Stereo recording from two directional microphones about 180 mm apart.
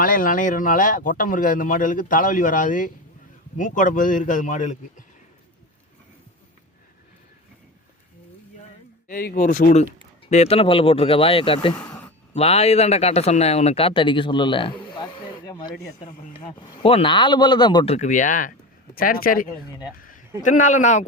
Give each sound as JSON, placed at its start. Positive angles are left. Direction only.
{"t": 0.0, "sound": "speech", "side_deg": 50}
{"t": 9.0, "sound": "a man's voice", "side_deg": 55}
{"t": 17.9, "sound": "speech", "side_deg": 45}
{"t": 20.0, "sound": "a sound", "side_deg": 50}
{"t": 20.4, "sound": "speech", "side_deg": 45}